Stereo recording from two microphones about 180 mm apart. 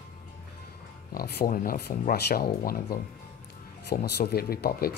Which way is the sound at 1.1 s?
55° left (ahead or behind).